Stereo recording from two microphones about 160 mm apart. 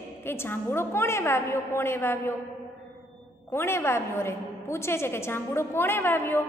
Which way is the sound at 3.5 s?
15° left (ahead or behind).